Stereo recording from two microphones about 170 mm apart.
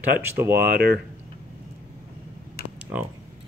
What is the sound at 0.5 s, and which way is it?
Speech, 65° right (ahead or behind).